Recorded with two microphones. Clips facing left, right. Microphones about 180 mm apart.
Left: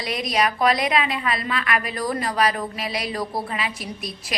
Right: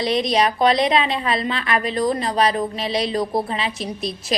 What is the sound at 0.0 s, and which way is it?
A woman's voice, 25° right (ahead or behind).